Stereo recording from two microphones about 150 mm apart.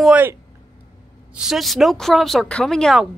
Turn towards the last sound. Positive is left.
turn(degrees=0)  # may be behind; listen again after turning